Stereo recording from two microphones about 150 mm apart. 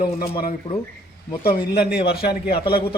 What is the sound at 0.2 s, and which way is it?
Speech, 75° left (ahead or behind).